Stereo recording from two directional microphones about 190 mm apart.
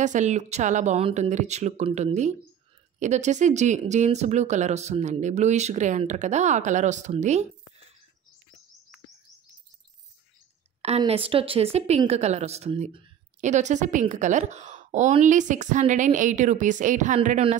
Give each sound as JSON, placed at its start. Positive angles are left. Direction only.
{"t": 0.0, "sound": "a woman's voice", "side_deg": -40}
{"t": 10.8, "sound": "a woman's voice", "side_deg": -35}